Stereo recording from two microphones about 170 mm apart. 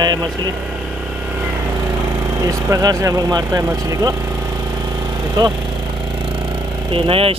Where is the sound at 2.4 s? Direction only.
20° right (ahead or behind).